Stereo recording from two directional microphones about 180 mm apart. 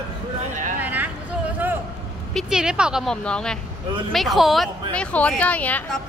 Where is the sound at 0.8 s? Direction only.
10° right (ahead or behind).